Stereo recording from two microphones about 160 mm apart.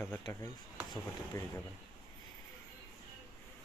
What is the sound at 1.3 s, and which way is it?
Speech, 20° left (ahead or behind).